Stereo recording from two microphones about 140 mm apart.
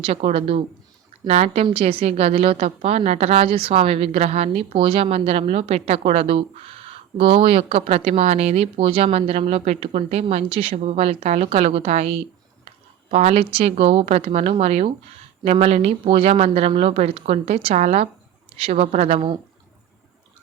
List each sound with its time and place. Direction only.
0.0 s speech: 45° right (ahead or behind)